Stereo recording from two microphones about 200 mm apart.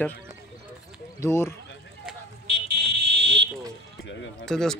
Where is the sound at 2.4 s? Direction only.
55° right (ahead or behind).